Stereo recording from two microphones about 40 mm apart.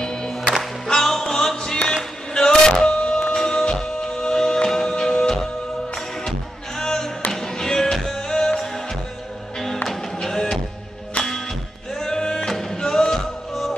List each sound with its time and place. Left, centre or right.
0.0 s music: centre
6.8 s music: centre
10.2 s music: centre
11.9 s music: centre